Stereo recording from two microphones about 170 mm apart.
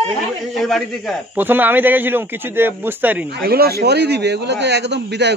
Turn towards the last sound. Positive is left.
turn(degrees=-85)